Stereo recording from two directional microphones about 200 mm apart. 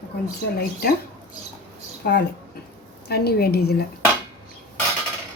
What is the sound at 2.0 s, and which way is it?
Speech, 50° left (ahead or behind).